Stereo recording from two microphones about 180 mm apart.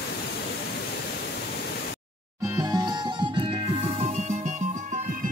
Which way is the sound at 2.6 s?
20° right (ahead or behind).